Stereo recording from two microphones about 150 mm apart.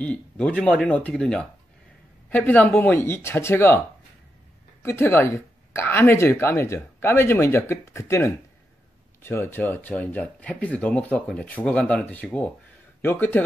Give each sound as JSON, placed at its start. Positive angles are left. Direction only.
{"t": 0.0, "sound": "speech", "side_deg": 10}
{"t": 4.8, "sound": "speech", "side_deg": 15}